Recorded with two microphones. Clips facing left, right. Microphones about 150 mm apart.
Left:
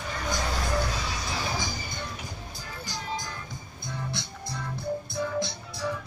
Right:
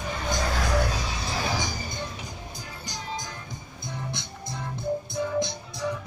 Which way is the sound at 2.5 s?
20° right (ahead or behind).